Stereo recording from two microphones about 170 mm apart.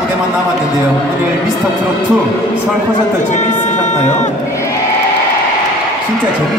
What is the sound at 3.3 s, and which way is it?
Speech, 45° left (ahead or behind).